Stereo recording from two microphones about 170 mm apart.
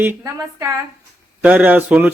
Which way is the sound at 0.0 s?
15° right (ahead or behind).